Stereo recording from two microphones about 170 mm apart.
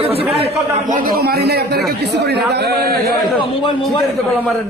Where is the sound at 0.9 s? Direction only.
55° right (ahead or behind).